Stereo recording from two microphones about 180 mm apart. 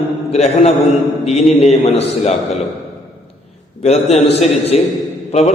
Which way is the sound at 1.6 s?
35° left (ahead or behind).